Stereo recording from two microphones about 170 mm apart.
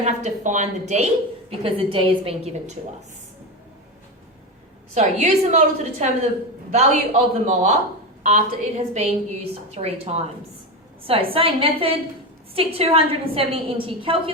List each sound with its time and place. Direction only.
0.0 s a woman's voice: 45° right (ahead or behind)
4.9 s a man's voice: 45° right (ahead or behind)